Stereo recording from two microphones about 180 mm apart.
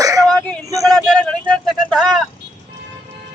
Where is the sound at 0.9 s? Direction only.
Centre (ahead or behind).